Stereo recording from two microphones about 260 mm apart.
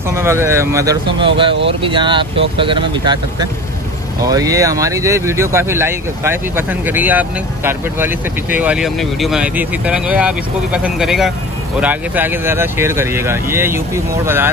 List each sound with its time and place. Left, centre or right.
0.1 s speech: centre